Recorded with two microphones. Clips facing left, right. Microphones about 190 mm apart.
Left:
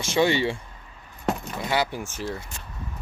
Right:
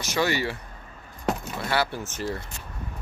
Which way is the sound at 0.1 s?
25° left (ahead or behind).